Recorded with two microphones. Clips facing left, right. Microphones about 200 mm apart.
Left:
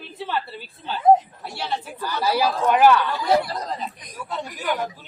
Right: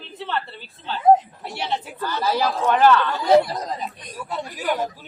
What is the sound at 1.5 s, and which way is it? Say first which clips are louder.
Speech: right 2 dB; 20° right (ahead or behind).